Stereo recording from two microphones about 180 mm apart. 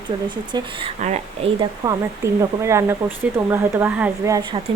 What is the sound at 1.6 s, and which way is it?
Speech, 15° right (ahead or behind).